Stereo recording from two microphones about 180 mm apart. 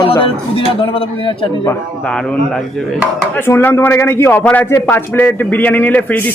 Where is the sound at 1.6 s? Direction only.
5° left (ahead or behind).